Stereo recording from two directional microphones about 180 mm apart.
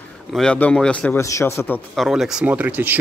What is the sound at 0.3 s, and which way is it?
A man's voice, 5° left (ahead or behind).